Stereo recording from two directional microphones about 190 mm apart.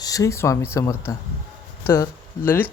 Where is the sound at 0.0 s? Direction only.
15° left (ahead or behind).